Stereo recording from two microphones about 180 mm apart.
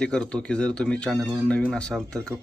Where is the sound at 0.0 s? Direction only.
5° left (ahead or behind).